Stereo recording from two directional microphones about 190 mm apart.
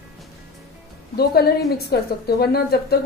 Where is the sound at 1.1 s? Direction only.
55° left (ahead or behind).